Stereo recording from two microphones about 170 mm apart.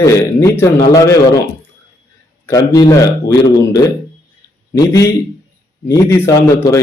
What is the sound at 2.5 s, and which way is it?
Speech, 20° left (ahead or behind).